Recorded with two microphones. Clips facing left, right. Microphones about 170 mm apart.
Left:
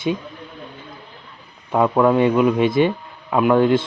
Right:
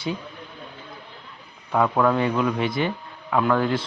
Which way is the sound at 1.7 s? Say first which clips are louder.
Left 4 dB; 20° left (ahead or behind).